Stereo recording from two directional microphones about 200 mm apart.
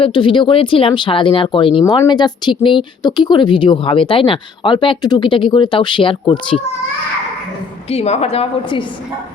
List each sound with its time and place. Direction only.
0.0 s speech: 25° left (ahead or behind)
7.9 s a woman's voice: 30° left (ahead or behind)